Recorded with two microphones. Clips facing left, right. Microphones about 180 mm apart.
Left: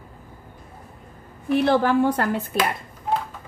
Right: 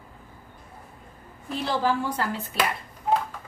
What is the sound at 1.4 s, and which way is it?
Speech, 60° left (ahead or behind).